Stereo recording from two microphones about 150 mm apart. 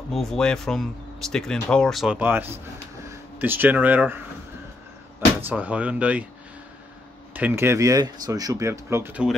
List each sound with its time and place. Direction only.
0.1 s speech: centre (ahead or behind)
5.4 s speech: 10° right (ahead or behind)
7.3 s speech: 15° right (ahead or behind)